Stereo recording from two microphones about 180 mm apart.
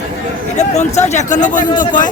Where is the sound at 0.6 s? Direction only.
40° left (ahead or behind).